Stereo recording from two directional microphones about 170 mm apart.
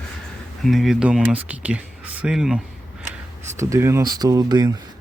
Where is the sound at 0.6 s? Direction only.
Centre (ahead or behind).